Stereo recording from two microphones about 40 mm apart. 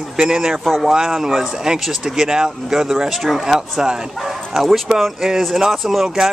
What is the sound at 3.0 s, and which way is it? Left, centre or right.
Speech, centre.